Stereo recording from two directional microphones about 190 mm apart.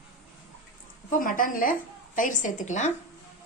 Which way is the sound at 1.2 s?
45° left (ahead or behind).